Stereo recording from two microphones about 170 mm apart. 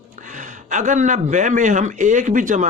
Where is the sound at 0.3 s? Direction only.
45° right (ahead or behind).